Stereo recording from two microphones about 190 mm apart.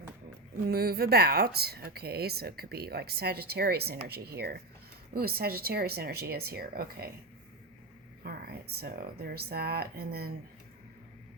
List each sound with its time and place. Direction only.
0.6 s a woman's voice: 55° right (ahead or behind)
8.2 s a sound: 55° right (ahead or behind)
8.8 s a woman's voice: 55° right (ahead or behind)